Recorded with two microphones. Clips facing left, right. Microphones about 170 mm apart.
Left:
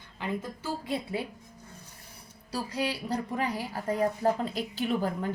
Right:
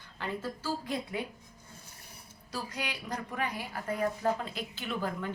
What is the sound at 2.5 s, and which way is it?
A woman's voice, 35° left (ahead or behind).